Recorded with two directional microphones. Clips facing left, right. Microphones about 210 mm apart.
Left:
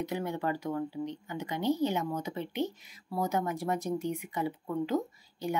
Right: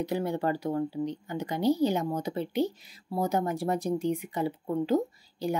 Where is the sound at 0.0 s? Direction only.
35° right (ahead or behind).